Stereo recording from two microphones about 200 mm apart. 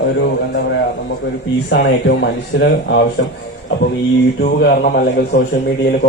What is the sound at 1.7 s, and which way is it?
Speech, 60° left (ahead or behind).